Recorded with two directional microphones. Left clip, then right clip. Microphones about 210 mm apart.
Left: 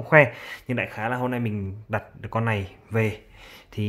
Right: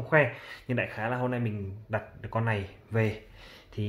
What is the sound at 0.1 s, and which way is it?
Speech, 35° left (ahead or behind).